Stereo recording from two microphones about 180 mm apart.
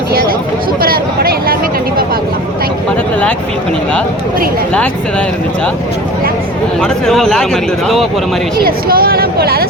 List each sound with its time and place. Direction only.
0.1 s a sound: 55° right (ahead or behind)
6.8 s speech: 5° left (ahead or behind)
8.6 s speech: 55° right (ahead or behind)